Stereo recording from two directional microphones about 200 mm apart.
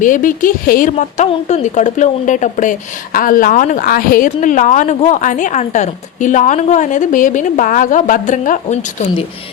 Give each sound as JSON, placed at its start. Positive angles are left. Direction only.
{"t": 0.0, "sound": "a woman's voice", "side_deg": 40}